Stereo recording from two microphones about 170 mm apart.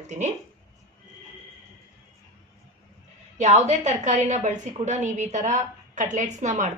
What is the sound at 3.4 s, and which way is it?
A woman's voice, 40° right (ahead or behind).